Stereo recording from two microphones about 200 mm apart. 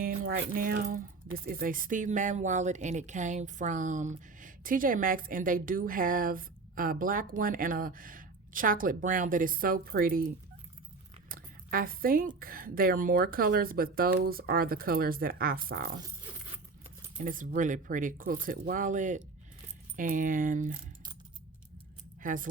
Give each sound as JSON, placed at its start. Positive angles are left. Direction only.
{"t": 0.5, "sound": "speech", "side_deg": -45}
{"t": 17.2, "sound": "speech", "side_deg": -40}
{"t": 22.2, "sound": "speech", "side_deg": -40}